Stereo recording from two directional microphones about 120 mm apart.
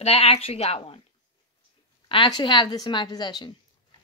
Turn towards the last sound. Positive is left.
turn(degrees=40)  # may be behind; listen again after turning